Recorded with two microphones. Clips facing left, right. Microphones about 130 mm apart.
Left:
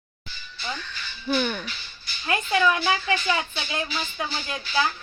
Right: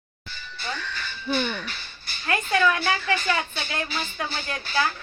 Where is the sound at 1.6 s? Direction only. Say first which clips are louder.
Right 1 dB; 50° right (ahead or behind).